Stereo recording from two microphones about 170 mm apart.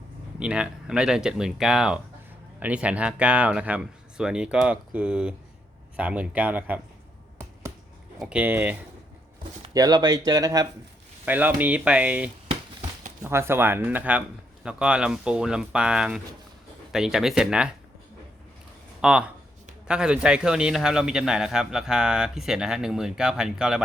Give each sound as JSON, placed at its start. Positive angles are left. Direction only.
{"t": 0.3, "sound": "a man's voice", "side_deg": -5}
{"t": 8.2, "sound": "speech", "side_deg": -5}
{"t": 9.7, "sound": "speech", "side_deg": -25}
{"t": 11.3, "sound": "a man's voice", "side_deg": -10}
{"t": 19.0, "sound": "a man's voice", "side_deg": -5}